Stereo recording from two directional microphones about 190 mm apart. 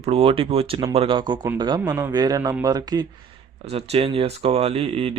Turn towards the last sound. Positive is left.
turn(degrees=-30)  # may be behind; listen again after turning